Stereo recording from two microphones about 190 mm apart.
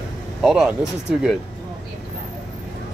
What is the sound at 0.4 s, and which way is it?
Speech, 5° right (ahead or behind).